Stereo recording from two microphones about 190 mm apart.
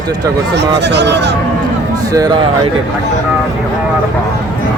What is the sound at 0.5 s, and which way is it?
Speech, 65° right (ahead or behind).